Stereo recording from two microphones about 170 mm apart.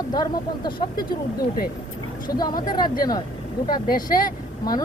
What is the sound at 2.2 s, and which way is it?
Speech, 25° left (ahead or behind).